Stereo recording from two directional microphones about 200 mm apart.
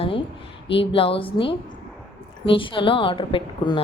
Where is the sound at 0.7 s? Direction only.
25° left (ahead or behind).